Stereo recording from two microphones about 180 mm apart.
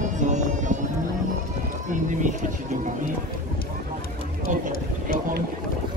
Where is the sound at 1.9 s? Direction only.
45° right (ahead or behind).